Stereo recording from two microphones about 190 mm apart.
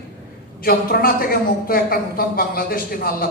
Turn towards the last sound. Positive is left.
turn(degrees=50)  # may be behind; listen again after turning